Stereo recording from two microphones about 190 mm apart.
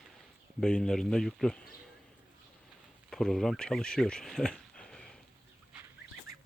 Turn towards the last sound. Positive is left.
turn(degrees=5)  # may be behind; listen again after turning